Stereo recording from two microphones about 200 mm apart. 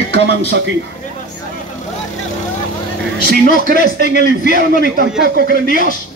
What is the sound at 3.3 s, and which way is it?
A man's voice, 45° right (ahead or behind).